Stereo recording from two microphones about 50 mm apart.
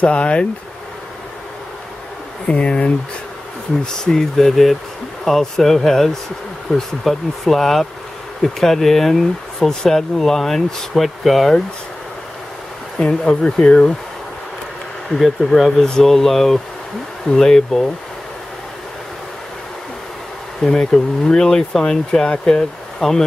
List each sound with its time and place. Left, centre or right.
0.0 s speech: left
2.4 s speech: left
3.8 s speech: centre
12.9 s speech: centre
15.1 s speech: centre
20.6 s speech: centre